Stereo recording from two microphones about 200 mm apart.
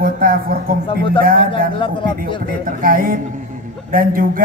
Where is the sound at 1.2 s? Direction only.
45° right (ahead or behind).